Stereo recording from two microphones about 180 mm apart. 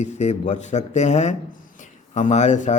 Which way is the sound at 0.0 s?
40° left (ahead or behind).